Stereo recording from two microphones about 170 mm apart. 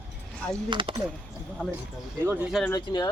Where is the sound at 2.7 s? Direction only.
25° left (ahead or behind).